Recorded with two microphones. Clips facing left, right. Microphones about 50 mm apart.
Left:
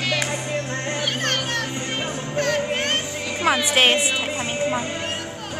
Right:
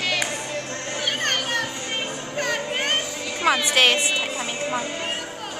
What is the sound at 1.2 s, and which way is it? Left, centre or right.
Children playing, centre.